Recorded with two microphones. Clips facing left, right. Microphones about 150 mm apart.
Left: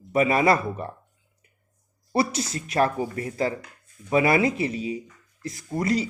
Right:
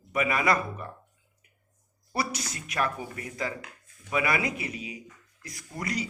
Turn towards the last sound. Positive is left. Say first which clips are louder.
# left 9 dB
turn(degrees=30)  # may be behind; listen again after turning